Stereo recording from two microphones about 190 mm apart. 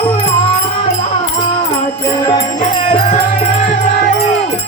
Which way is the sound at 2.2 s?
25° left (ahead or behind).